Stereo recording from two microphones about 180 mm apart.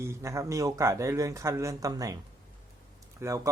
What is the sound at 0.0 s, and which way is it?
Speech, 15° right (ahead or behind).